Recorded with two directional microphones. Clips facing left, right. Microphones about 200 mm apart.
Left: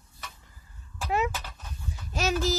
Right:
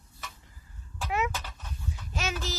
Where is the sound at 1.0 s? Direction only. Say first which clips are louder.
Left 3 dB; 35° left (ahead or behind).